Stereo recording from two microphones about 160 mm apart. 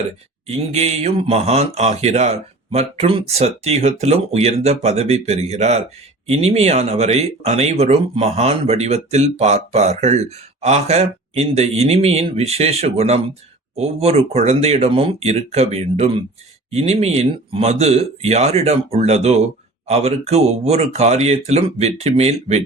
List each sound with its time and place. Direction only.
0.4 s speech: 40° right (ahead or behind)